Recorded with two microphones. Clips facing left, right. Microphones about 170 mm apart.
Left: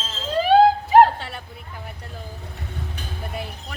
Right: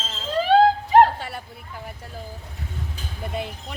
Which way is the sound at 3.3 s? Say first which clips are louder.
Right 5 dB; 20° right (ahead or behind).